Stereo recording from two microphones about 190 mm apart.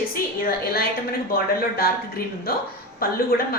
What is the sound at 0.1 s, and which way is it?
A woman's voice, 50° left (ahead or behind).